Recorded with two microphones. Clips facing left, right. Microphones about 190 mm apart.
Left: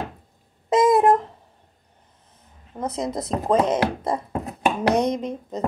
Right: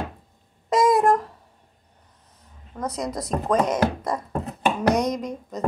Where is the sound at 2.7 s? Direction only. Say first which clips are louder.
Left 2 dB; 25° left (ahead or behind).